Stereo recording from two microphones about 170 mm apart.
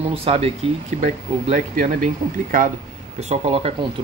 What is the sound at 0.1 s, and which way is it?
Speech, 35° right (ahead or behind).